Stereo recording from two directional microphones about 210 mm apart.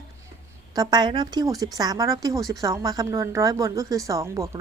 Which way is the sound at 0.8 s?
20° right (ahead or behind).